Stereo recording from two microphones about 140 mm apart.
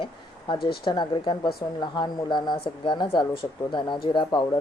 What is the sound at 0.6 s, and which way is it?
Speech, 90° left.